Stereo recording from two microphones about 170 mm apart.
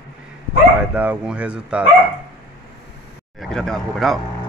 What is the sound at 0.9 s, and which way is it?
Speech, 10° right (ahead or behind).